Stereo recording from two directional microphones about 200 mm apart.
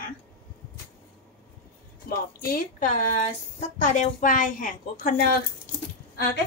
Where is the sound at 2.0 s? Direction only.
50° left (ahead or behind).